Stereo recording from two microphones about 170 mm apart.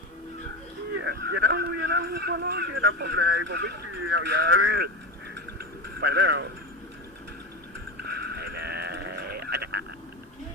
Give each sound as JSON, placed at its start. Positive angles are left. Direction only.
{"t": 0.9, "sound": "speech", "side_deg": -80}
{"t": 5.3, "sound": "a sound", "side_deg": -70}
{"t": 8.0, "sound": "sheep", "side_deg": -70}